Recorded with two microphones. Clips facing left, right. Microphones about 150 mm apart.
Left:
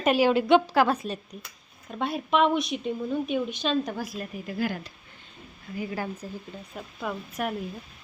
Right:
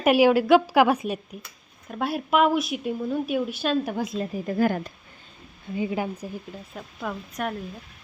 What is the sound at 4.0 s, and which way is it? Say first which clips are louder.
Speech: right 6 dB; 25° right (ahead or behind).